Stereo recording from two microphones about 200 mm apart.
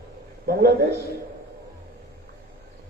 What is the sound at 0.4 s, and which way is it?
Speech, 55° right (ahead or behind).